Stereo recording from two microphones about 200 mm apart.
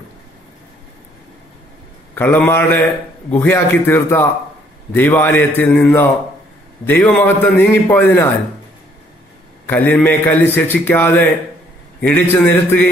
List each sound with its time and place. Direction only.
2.1 s a man's voice: 10° left (ahead or behind)
9.7 s a man's voice: 10° left (ahead or behind)